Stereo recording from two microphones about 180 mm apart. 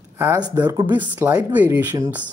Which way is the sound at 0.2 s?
10° right (ahead or behind).